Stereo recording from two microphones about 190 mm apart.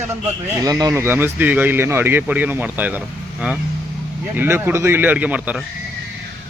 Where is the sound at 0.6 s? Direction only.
20° right (ahead or behind).